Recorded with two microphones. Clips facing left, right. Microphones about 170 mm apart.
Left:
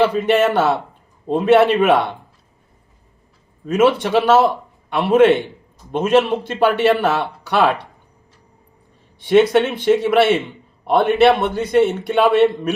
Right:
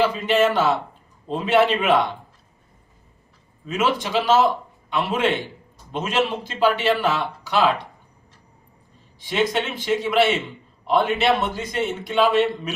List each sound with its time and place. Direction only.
0.0 s speech: 55° left (ahead or behind)
3.7 s speech: 55° left (ahead or behind)
9.2 s speech: 60° left (ahead or behind)